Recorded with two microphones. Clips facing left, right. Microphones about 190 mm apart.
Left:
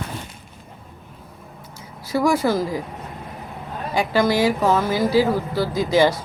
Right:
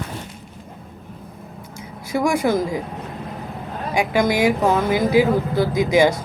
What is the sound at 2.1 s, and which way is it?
Speech, 20° right (ahead or behind).